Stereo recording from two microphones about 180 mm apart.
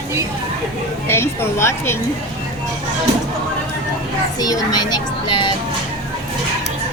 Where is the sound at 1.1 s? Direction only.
15° left (ahead or behind).